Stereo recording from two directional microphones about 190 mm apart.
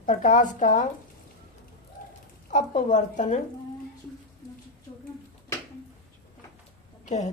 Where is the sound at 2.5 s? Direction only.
40° left (ahead or behind).